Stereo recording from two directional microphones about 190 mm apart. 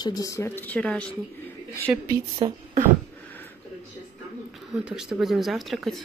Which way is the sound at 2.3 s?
30° right (ahead or behind).